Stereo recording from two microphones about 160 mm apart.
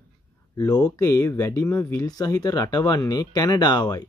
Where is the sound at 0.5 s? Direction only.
20° left (ahead or behind).